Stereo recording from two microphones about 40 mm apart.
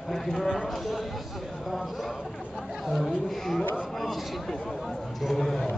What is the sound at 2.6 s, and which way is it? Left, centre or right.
Chatter, centre.